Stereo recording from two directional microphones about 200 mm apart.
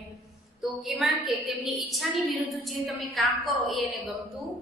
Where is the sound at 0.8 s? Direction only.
Centre (ahead or behind).